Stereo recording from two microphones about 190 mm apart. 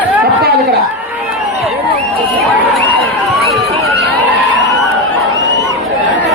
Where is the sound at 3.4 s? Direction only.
Centre (ahead or behind).